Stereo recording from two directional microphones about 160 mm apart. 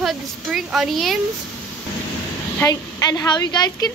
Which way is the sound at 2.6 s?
20° left (ahead or behind).